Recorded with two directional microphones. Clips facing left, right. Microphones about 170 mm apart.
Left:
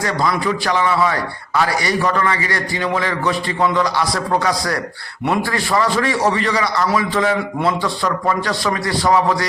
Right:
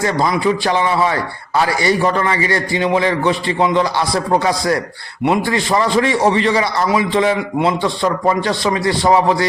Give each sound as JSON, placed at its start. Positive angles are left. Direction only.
{"t": 0.0, "sound": "a man's voice", "side_deg": -25}